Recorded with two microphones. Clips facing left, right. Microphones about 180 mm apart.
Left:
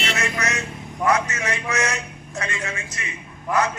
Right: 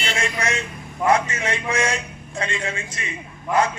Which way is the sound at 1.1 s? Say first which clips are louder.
Right 2 dB; 30° right (ahead or behind).